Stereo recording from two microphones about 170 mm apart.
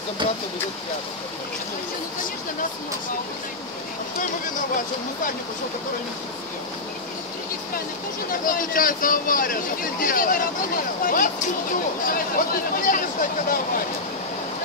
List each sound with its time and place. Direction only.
8.3 s speech: 55° left (ahead or behind)